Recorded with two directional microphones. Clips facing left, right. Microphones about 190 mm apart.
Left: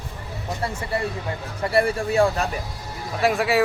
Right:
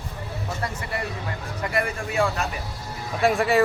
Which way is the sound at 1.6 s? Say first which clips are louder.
Left 6 dB; 35° left (ahead or behind).